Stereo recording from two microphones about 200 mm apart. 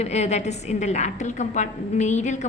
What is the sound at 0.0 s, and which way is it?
A woman's voice, 35° left (ahead or behind).